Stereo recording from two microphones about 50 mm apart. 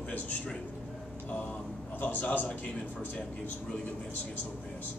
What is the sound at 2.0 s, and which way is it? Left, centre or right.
Speech, left.